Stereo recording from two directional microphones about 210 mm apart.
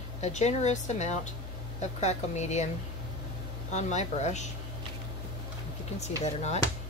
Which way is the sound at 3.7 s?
35° left (ahead or behind).